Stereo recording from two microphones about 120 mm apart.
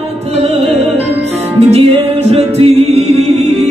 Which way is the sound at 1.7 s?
60° right (ahead or behind).